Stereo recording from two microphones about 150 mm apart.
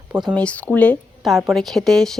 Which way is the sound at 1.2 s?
10° right (ahead or behind).